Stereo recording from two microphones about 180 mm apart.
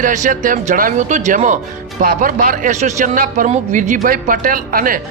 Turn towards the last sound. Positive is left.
turn(degrees=-50)  # may be behind; listen again after turning